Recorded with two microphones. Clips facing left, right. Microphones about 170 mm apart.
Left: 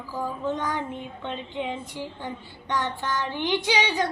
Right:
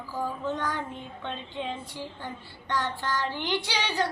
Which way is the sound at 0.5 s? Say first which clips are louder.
Left 3 dB; 20° left (ahead or behind).